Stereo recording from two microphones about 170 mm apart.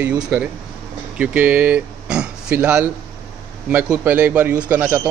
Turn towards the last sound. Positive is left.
turn(degrees=-10)  # may be behind; listen again after turning